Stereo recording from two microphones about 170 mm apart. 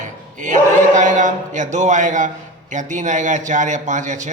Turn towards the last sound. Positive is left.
turn(degrees=-45)  # may be behind; listen again after turning